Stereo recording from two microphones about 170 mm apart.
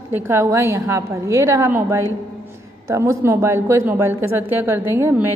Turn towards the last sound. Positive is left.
turn(degrees=-15)  # may be behind; listen again after turning